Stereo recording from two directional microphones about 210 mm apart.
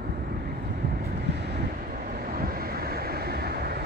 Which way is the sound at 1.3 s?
55° right (ahead or behind).